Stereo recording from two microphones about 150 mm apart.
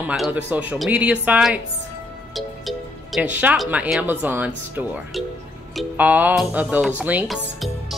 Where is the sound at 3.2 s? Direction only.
10° right (ahead or behind).